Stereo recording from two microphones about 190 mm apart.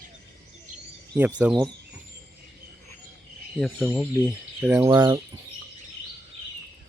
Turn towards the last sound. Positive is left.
turn(degrees=-20)  # may be behind; listen again after turning